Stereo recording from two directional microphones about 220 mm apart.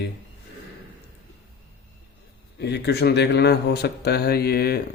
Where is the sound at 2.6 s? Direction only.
50° left (ahead or behind).